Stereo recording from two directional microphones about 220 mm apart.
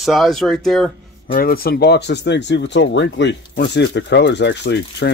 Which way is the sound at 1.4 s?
45° left (ahead or behind).